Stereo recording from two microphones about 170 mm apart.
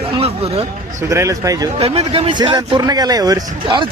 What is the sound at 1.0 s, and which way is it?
Speech, 15° right (ahead or behind).